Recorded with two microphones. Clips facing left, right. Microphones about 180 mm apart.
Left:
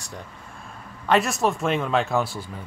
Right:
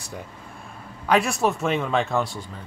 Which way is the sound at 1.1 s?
Centre (ahead or behind).